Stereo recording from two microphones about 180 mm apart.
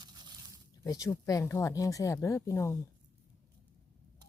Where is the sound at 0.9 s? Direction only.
20° left (ahead or behind).